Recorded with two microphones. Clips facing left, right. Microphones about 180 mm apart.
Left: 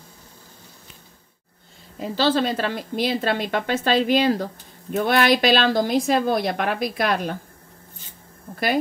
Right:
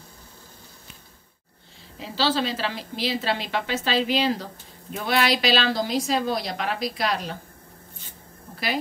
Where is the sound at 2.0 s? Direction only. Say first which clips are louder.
Left 4 dB; 50° left (ahead or behind).